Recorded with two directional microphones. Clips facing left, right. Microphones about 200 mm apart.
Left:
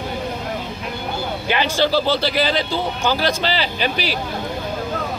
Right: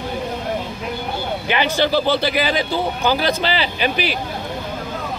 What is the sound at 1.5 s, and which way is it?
Speech, 15° right (ahead or behind).